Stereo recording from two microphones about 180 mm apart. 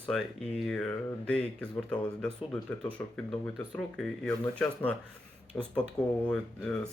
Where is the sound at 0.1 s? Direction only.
5° left (ahead or behind).